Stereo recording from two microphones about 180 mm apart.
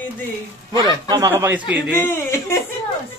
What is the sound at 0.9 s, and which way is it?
Speech, 20° right (ahead or behind).